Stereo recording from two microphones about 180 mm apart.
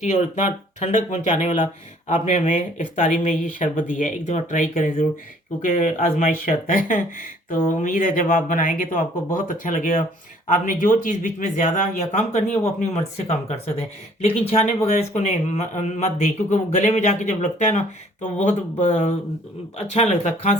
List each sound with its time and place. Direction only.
0.0 s speech: 40° left (ahead or behind)